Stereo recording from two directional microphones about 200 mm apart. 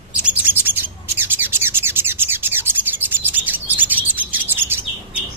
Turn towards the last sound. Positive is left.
turn(degrees=-10)  # may be behind; listen again after turning